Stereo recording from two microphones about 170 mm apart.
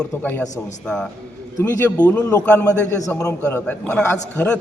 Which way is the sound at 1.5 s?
20° left (ahead or behind).